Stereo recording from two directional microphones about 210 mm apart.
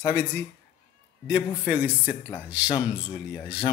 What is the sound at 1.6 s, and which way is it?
Speech, 5° right (ahead or behind).